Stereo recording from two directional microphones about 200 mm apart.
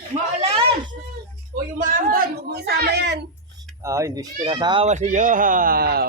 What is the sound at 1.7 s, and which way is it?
A woman's voice, 40° right (ahead or behind).